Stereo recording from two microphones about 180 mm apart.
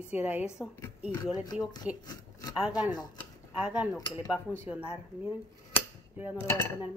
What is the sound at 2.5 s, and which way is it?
Speech, 5° right (ahead or behind).